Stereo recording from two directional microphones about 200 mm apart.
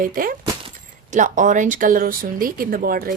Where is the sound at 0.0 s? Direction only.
45° right (ahead or behind).